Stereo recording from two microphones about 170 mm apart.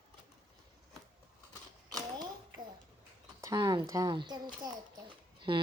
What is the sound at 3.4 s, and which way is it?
Speech, 20° right (ahead or behind).